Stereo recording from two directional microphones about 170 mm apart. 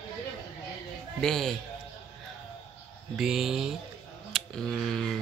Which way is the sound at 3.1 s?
Centre (ahead or behind).